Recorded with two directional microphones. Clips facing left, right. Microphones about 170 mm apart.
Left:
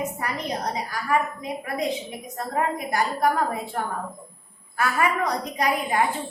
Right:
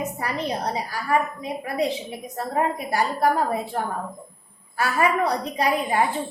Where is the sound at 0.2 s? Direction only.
30° right (ahead or behind).